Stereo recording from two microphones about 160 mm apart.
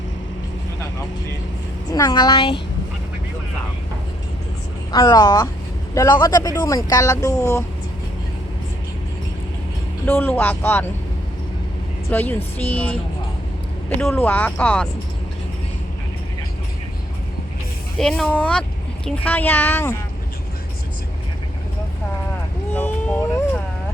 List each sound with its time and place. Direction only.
1.9 s speech: 25° left (ahead or behind)
4.9 s speech: 25° left (ahead or behind)
10.1 s a child's voice: 10° left (ahead or behind)
12.1 s a child's voice: 10° left (ahead or behind)
14.0 s a child's voice: 15° left (ahead or behind)
17.9 s a child's voice: 5° left (ahead or behind)
22.7 s vehicle: 10° left (ahead or behind)